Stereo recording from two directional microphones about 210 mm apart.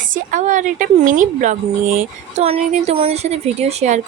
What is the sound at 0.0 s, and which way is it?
Speech, 40° right (ahead or behind).